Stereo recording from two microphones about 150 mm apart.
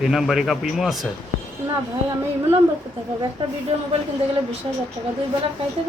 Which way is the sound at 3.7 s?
45° right (ahead or behind).